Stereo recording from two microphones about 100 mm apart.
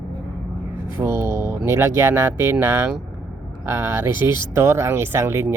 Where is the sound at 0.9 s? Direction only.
25° right (ahead or behind).